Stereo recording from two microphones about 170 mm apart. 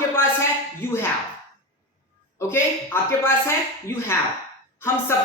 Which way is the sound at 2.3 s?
15° left (ahead or behind).